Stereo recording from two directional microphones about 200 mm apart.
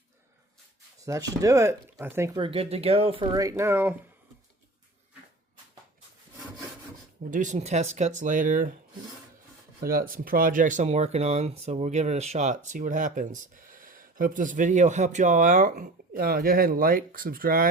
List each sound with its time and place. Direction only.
1.0 s speech: 15° right (ahead or behind)
7.3 s speech: 40° right (ahead or behind)
9.8 s speech: 45° right (ahead or behind)